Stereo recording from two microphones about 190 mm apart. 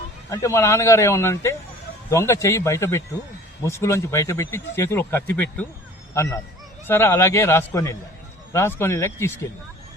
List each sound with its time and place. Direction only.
0.3 s speech: 15° left (ahead or behind)